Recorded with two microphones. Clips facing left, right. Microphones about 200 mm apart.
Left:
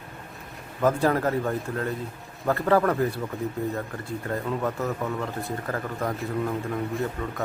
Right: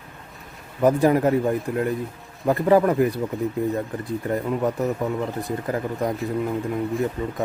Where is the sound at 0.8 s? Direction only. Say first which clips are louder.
Right 5 dB; 15° right (ahead or behind).